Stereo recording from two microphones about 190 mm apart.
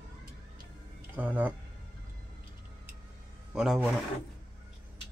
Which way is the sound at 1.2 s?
10° right (ahead or behind).